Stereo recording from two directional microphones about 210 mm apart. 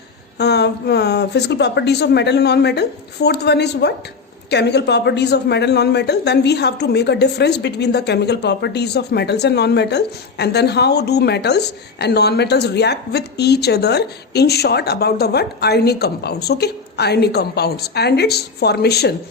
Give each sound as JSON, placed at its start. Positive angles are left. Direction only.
{"t": 0.3, "sound": "a woman's voice", "side_deg": 50}